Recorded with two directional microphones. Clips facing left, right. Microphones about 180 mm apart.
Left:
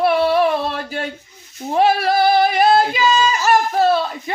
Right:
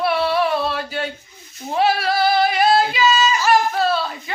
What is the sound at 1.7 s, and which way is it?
Female singing, 50° left (ahead or behind).